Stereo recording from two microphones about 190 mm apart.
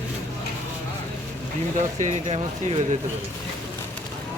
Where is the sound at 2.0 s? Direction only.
35° right (ahead or behind).